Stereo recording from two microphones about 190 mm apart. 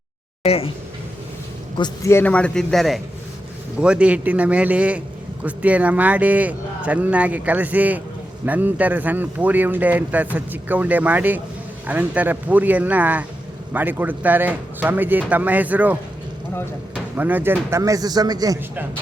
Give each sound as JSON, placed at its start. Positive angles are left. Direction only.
{"t": 0.4, "sound": "speech", "side_deg": 30}
{"t": 1.8, "sound": "a man's voice", "side_deg": 15}